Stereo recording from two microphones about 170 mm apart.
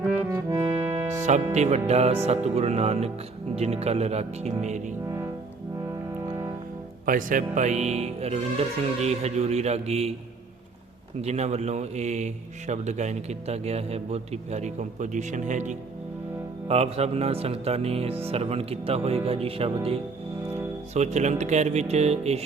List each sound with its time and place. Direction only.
0.0 s music: 10° right (ahead or behind)
1.5 s music: 40° right (ahead or behind)
7.0 s music: 55° right (ahead or behind)
11.2 s a man's voice: 40° right (ahead or behind)
16.6 s music: 35° right (ahead or behind)